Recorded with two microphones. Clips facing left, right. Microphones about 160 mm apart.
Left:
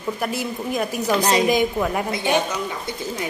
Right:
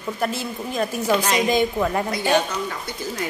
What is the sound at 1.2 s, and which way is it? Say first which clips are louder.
Speech: left 3 dB; 35° left (ahead or behind).